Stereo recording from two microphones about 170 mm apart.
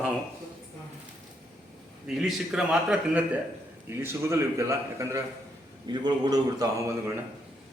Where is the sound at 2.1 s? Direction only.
5° right (ahead or behind).